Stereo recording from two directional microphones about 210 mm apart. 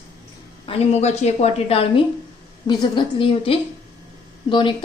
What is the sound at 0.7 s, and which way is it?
A woman's voice, 30° left (ahead or behind).